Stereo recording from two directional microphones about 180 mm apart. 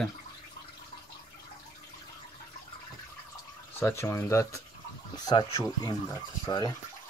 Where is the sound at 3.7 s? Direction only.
15° left (ahead or behind).